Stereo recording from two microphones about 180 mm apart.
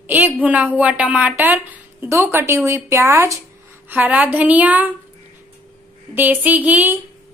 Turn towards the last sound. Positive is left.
turn(degrees=-10)  # may be behind; listen again after turning